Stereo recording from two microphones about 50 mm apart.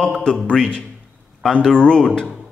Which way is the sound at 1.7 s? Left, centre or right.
Centre.